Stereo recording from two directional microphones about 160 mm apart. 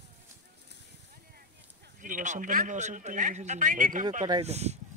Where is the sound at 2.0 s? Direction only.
55° right (ahead or behind).